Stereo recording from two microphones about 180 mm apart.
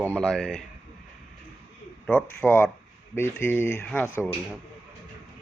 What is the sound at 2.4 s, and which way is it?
Speech, 10° left (ahead or behind).